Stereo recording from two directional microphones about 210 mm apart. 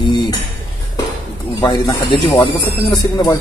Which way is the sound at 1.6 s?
15° left (ahead or behind).